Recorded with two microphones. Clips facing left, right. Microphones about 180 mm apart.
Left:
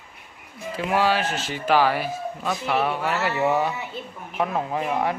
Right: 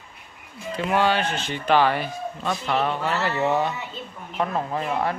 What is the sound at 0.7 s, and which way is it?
Speech, 5° left (ahead or behind).